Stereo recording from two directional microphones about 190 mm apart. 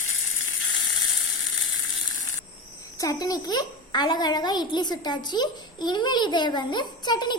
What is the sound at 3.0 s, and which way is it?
A child's voice, 20° left (ahead or behind).